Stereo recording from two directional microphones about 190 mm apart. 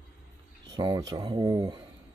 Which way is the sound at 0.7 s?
20° right (ahead or behind).